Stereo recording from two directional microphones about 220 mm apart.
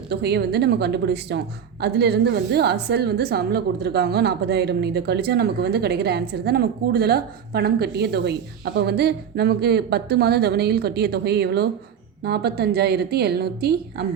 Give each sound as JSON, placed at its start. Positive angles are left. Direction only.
{"t": 0.1, "sound": "a woman's voice", "side_deg": -50}